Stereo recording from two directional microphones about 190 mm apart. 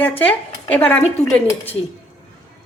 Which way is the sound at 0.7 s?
10° left (ahead or behind).